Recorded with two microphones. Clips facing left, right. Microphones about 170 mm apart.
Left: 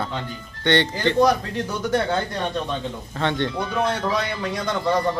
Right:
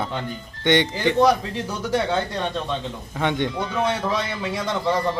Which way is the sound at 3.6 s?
5° right (ahead or behind).